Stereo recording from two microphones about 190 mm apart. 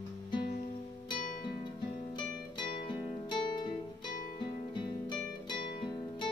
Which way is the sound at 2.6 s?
25° left (ahead or behind).